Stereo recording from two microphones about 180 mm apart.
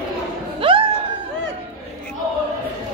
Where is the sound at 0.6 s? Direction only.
30° right (ahead or behind).